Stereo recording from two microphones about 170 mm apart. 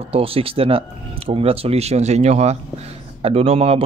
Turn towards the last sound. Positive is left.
turn(degrees=-35)  # may be behind; listen again after turning